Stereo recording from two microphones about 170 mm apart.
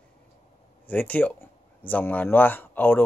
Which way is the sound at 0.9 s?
10° left (ahead or behind).